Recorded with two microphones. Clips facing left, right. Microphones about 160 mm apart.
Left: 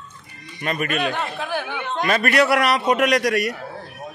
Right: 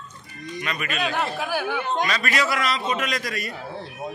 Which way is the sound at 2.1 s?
60° left (ahead or behind).